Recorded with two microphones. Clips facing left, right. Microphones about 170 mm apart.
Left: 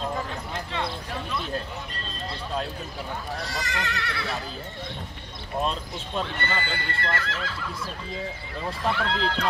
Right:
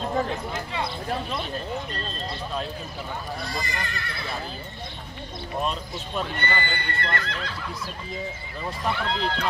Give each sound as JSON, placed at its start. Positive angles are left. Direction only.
{"t": 3.4, "sound": "speech", "side_deg": 85}
{"t": 6.4, "sound": "speech", "side_deg": 0}
{"t": 8.8, "sound": "speech", "side_deg": 0}